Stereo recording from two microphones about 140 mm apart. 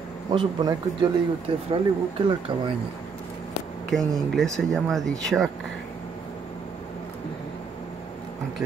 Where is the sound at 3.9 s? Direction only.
Centre (ahead or behind).